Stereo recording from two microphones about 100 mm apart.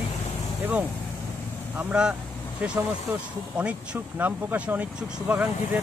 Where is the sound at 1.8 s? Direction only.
10° right (ahead or behind).